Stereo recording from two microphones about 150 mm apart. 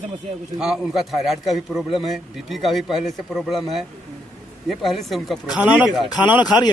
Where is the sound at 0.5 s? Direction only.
5° right (ahead or behind).